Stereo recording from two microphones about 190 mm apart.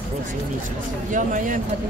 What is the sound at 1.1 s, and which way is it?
Speech, 45° right (ahead or behind).